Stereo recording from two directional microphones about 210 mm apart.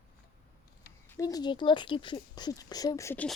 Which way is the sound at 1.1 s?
15° left (ahead or behind).